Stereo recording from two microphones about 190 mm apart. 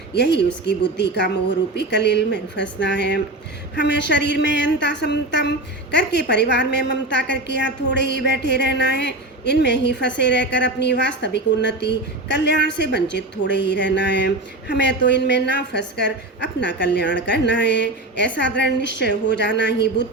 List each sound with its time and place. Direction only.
0.3 s a woman's voice: 60° left (ahead or behind)